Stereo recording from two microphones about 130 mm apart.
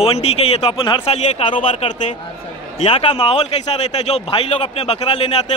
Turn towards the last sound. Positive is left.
turn(degrees=50)  # may be behind; listen again after turning